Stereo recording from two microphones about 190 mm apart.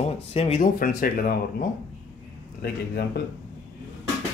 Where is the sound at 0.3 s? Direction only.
35° left (ahead or behind).